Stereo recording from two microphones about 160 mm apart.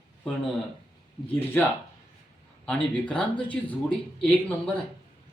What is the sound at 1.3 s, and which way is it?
Speech, 15° left (ahead or behind).